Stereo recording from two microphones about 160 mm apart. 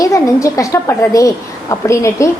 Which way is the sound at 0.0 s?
20° left (ahead or behind).